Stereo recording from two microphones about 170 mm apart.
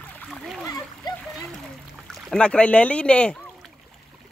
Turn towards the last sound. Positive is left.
turn(degrees=5)  # may be behind; listen again after turning